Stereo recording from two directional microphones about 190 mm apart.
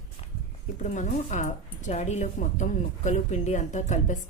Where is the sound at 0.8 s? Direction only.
40° left (ahead or behind).